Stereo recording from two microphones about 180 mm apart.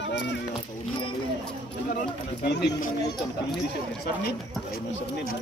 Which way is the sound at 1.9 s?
65° left (ahead or behind).